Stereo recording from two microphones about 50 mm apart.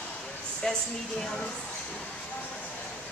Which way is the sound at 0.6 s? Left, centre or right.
Centre.